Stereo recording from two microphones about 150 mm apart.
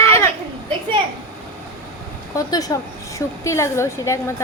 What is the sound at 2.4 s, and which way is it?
A woman's voice, 25° left (ahead or behind).